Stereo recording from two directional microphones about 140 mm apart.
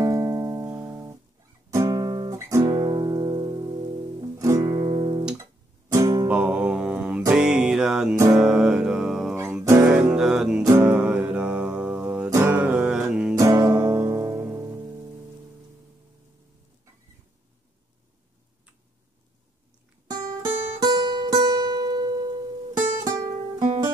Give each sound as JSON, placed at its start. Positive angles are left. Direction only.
{"t": 0.0, "sound": "music", "side_deg": -25}
{"t": 4.6, "sound": "guitar", "side_deg": -35}
{"t": 5.4, "sound": "guitar", "side_deg": -20}
{"t": 6.2, "sound": "music", "side_deg": -10}
{"t": 9.3, "sound": "music", "side_deg": -20}
{"t": 9.9, "sound": "music", "side_deg": -5}
{"t": 10.6, "sound": "music", "side_deg": -20}
{"t": 10.9, "sound": "music", "side_deg": -5}
{"t": 12.3, "sound": "music", "side_deg": -20}
{"t": 12.5, "sound": "music", "side_deg": -10}
{"t": 13.3, "sound": "music", "side_deg": -25}
{"t": 20.2, "sound": "music", "side_deg": -25}